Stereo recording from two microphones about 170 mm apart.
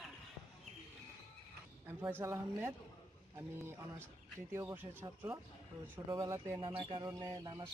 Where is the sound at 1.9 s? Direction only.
15° right (ahead or behind).